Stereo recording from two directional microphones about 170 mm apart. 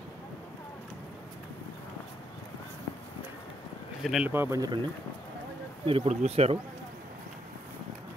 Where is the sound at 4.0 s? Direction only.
Centre (ahead or behind).